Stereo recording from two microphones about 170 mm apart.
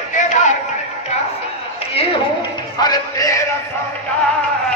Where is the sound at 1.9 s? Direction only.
25° left (ahead or behind).